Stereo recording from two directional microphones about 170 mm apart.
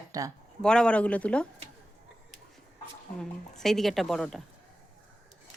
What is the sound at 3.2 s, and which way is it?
Speech, centre (ahead or behind).